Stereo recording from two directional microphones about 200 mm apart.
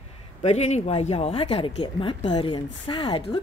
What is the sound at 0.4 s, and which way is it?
Speech, 35° left (ahead or behind).